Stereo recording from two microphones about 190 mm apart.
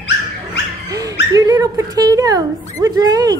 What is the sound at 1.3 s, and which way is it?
A woman's voice, 20° right (ahead or behind).